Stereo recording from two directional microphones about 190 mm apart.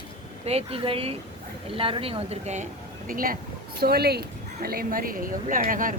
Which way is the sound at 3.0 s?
50° right (ahead or behind).